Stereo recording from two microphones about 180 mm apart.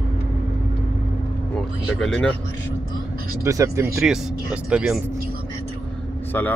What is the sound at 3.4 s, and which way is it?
Speech, 15° right (ahead or behind).